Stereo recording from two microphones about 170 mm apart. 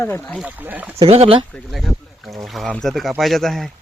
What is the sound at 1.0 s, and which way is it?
Speech, 35° right (ahead or behind).